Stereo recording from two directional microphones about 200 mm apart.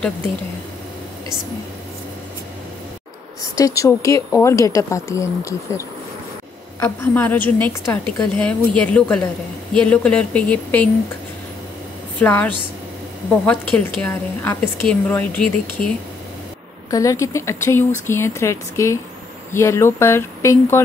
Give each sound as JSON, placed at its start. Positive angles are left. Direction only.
{"t": 3.5, "sound": "a woman's voice", "side_deg": 15}
{"t": 12.2, "sound": "a woman's voice", "side_deg": 5}
{"t": 13.5, "sound": "a woman's voice", "side_deg": 5}
{"t": 16.9, "sound": "a woman's voice", "side_deg": 15}